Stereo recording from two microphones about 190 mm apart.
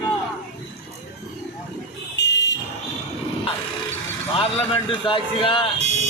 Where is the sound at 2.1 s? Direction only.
65° left (ahead or behind).